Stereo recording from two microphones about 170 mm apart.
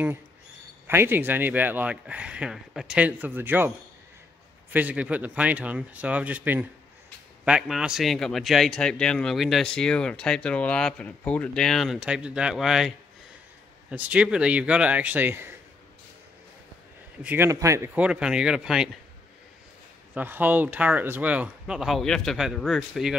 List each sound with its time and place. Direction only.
0.8 s speech: 15° right (ahead or behind)
4.7 s a man's voice: 10° right (ahead or behind)
17.2 s speech: 10° right (ahead or behind)
20.2 s a man's voice: 10° right (ahead or behind)